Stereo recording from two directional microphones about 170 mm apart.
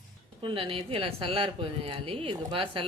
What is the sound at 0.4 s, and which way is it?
A woman's voice, 30° right (ahead or behind).